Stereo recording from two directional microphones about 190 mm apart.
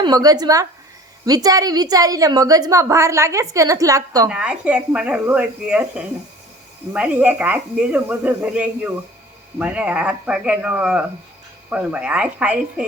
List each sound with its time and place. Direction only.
0.0 s a woman's voice: 20° right (ahead or behind)
4.3 s speech: 5° right (ahead or behind)